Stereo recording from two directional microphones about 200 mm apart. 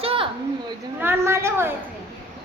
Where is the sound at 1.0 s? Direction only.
10° right (ahead or behind).